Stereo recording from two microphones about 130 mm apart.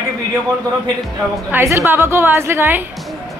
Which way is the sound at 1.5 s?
20° right (ahead or behind).